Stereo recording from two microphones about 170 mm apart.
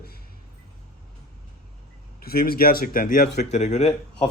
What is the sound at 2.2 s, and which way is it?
Speech, 60° left (ahead or behind).